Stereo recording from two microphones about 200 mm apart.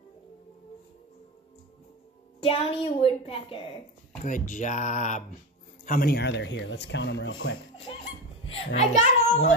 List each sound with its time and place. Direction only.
2.4 s a woman's voice: 30° left (ahead or behind)
4.2 s speech: 40° left (ahead or behind)
5.9 s speech: 50° left (ahead or behind); by 7.5 s 65° left (ahead or behind)
8.7 s speech: 35° left (ahead or behind)